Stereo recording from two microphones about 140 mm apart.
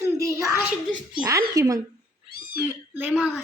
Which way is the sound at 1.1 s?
25° right (ahead or behind).